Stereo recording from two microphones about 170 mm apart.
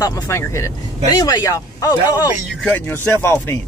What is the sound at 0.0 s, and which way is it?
A woman's voice, 20° left (ahead or behind).